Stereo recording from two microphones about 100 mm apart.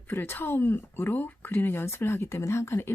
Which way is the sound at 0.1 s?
20° left (ahead or behind).